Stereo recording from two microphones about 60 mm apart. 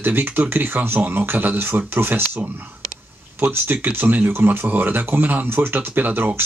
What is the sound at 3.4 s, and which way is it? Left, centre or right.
Speech, right.